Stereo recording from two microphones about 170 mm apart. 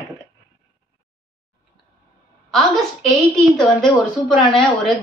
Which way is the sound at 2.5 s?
Centre (ahead or behind).